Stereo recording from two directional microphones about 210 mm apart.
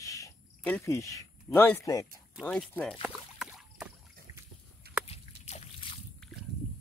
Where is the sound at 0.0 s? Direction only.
15° left (ahead or behind).